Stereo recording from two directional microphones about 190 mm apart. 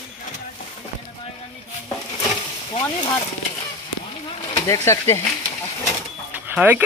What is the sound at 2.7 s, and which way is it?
Speech, 25° left (ahead or behind).